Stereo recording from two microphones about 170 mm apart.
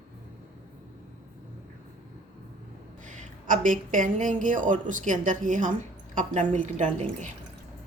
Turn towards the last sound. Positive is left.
turn(degrees=-45)  # may be behind; listen again after turning